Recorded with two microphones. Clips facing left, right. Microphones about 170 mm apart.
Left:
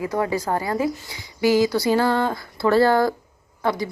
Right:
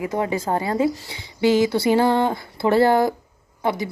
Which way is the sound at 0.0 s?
20° right (ahead or behind).